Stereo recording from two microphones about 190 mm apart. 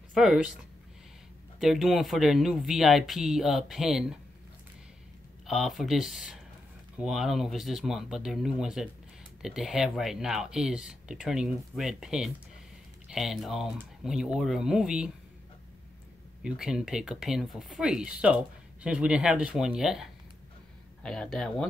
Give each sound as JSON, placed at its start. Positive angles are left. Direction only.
{"t": 0.1, "sound": "speech", "side_deg": -5}
{"t": 1.6, "sound": "speech", "side_deg": 0}
{"t": 5.5, "sound": "speech", "side_deg": 0}
{"t": 16.4, "sound": "speech", "side_deg": -5}